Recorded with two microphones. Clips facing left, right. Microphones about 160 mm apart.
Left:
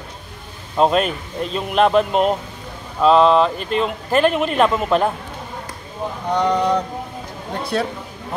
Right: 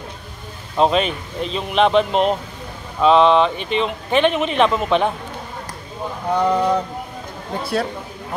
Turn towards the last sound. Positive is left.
turn(degrees=-5)  # may be behind; listen again after turning